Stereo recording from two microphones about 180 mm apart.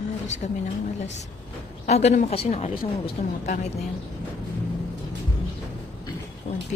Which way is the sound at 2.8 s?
55° left (ahead or behind).